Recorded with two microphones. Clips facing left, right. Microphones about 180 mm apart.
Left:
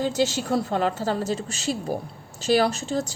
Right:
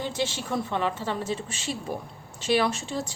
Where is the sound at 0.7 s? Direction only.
40° left (ahead or behind).